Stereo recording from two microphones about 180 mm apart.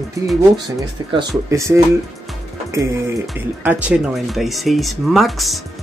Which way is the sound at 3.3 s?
10° right (ahead or behind).